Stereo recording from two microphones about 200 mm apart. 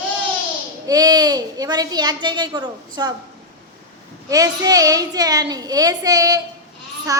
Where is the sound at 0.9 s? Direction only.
20° right (ahead or behind).